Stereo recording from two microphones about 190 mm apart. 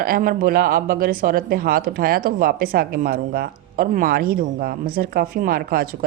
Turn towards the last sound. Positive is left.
turn(degrees=-50)  # may be behind; listen again after turning